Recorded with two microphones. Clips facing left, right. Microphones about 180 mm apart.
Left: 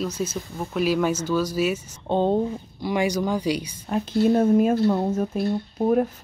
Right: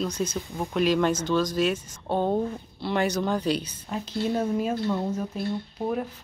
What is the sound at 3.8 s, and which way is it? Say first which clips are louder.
Speech: left 11 dB; 50° left (ahead or behind).